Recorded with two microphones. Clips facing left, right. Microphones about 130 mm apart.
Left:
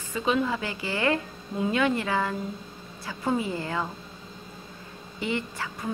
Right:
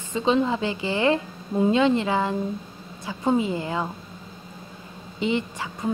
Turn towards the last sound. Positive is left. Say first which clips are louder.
# right 4 dB
turn(degrees=-20)  # may be behind; listen again after turning